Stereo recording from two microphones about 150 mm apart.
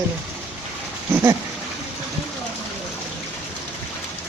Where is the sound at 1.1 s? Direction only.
15° right (ahead or behind).